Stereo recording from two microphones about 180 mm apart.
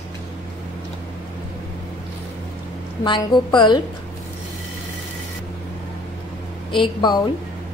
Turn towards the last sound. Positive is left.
turn(degrees=25)  # may be behind; listen again after turning